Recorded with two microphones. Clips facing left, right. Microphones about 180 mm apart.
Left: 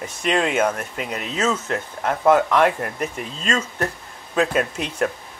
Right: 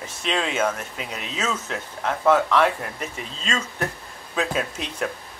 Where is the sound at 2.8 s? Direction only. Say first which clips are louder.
Left 5 dB; 55° left (ahead or behind).